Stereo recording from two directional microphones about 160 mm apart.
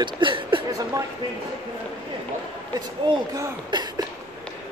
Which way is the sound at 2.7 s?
25° right (ahead or behind).